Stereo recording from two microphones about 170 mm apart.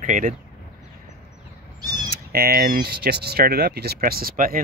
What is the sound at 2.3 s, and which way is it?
Speech, 60° right (ahead or behind).